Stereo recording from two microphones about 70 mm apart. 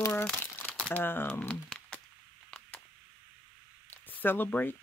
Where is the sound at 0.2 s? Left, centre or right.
Left.